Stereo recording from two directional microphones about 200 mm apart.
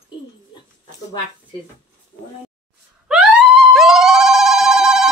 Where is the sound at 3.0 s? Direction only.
5° right (ahead or behind).